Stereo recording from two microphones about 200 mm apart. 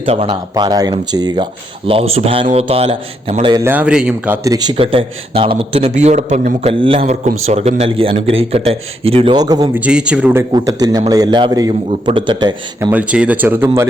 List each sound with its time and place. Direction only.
0.0 s speech: 30° right (ahead or behind)
1.9 s speech: 30° right (ahead or behind)
3.5 s speech: 10° right (ahead or behind)
4.4 s speech: 20° right (ahead or behind)
9.7 s speech: 5° right (ahead or behind)
10.5 s speech: 20° right (ahead or behind)
12.9 s speech: 5° right (ahead or behind)